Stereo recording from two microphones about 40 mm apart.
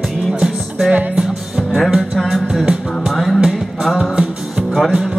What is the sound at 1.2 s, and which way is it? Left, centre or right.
Music, centre.